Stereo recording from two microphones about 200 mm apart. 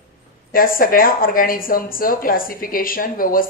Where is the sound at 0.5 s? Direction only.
45° left (ahead or behind).